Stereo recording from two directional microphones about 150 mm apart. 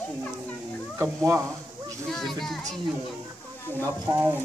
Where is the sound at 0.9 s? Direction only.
20° right (ahead or behind).